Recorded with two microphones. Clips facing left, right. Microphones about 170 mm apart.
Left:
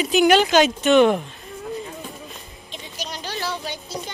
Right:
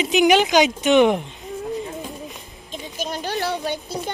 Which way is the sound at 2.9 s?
50° right (ahead or behind).